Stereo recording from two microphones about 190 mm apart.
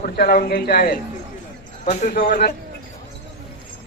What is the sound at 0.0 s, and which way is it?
Speech, 55° left (ahead or behind).